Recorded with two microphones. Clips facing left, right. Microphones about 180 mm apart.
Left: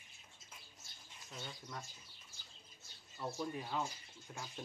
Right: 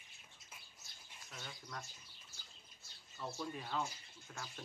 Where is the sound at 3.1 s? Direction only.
20° left (ahead or behind).